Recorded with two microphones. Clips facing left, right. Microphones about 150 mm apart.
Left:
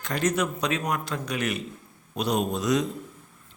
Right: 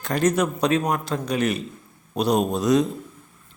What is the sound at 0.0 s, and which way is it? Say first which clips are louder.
A man's voice: right 5 dB; 35° right (ahead or behind).